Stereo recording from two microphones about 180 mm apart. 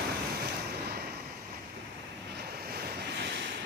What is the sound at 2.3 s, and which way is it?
Waves, 60° right (ahead or behind).